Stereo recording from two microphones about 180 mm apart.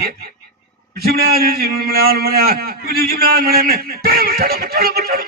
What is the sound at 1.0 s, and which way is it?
A man's voice, 60° right (ahead or behind).